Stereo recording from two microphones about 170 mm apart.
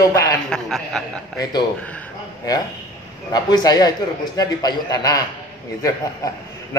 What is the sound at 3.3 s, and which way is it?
A man's voice, 25° left (ahead or behind).